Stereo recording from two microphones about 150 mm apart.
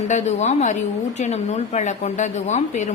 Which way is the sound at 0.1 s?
50° left (ahead or behind).